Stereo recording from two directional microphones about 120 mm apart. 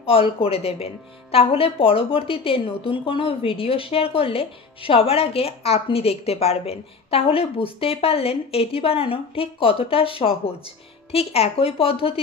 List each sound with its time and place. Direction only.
0.0 s a woman's voice: 50° left (ahead or behind)